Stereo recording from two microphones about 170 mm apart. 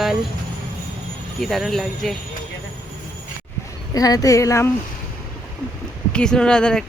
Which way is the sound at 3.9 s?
20° left (ahead or behind).